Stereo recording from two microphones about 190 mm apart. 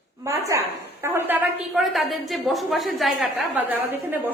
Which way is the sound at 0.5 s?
15° right (ahead or behind).